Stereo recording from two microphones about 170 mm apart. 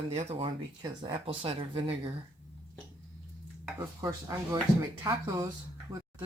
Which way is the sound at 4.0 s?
20° right (ahead or behind).